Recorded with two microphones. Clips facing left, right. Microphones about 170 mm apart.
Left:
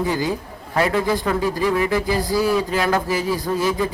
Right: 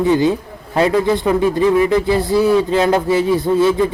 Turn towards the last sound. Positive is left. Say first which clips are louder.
# right 7 dB
turn(degrees=-25)  # may be behind; listen again after turning